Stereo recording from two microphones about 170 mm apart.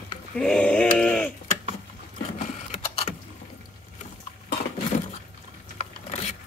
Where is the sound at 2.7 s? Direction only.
45° left (ahead or behind).